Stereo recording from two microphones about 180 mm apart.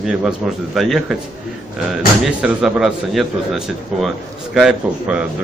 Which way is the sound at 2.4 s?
Centre (ahead or behind).